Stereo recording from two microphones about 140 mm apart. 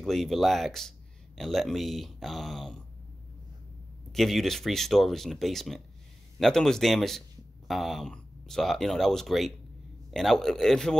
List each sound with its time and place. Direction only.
0.0 s speech: centre (ahead or behind)
4.1 s speech: centre (ahead or behind)